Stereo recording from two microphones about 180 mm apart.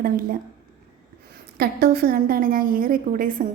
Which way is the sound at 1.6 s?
55° right (ahead or behind).